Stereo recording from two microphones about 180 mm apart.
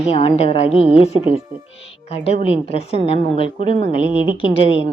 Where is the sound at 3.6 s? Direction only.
45° right (ahead or behind).